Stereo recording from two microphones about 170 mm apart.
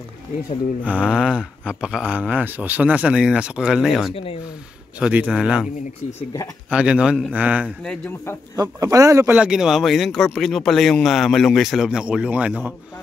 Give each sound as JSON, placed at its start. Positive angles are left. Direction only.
{"t": 0.8, "sound": "a man's voice", "side_deg": -5}
{"t": 4.1, "sound": "speech", "side_deg": 35}
{"t": 5.0, "sound": "a man's voice", "side_deg": -10}
{"t": 6.7, "sound": "a man's voice", "side_deg": -5}
{"t": 7.6, "sound": "a man's voice", "side_deg": 5}
{"t": 8.5, "sound": "speech", "side_deg": -20}
{"t": 9.4, "sound": "a man's voice", "side_deg": -5}